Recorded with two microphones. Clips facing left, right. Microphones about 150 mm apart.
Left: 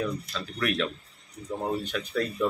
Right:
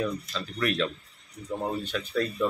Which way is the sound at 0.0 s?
5° right (ahead or behind).